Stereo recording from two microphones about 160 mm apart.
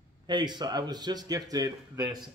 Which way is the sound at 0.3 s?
25° right (ahead or behind).